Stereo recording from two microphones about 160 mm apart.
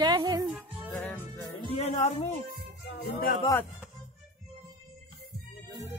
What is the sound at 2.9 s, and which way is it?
Music, 75° left (ahead or behind).